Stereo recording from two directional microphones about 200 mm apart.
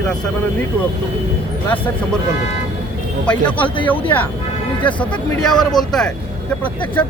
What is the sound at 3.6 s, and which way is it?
Speech, 25° left (ahead or behind).